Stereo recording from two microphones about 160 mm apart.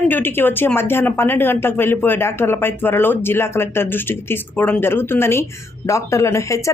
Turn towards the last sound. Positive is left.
turn(degrees=20)  # may be behind; listen again after turning